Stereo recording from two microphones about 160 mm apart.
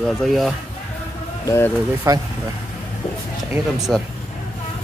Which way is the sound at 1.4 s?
20° left (ahead or behind).